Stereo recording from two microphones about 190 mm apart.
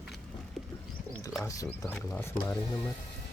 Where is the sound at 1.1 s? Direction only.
15° left (ahead or behind).